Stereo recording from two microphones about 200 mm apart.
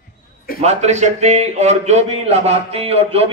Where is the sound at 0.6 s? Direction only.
35° right (ahead or behind).